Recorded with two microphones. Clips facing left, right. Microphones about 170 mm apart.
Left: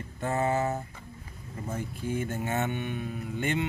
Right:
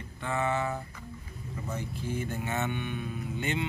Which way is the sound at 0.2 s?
40° left (ahead or behind).